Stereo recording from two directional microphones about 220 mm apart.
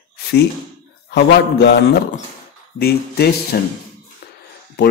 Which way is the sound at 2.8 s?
45° left (ahead or behind).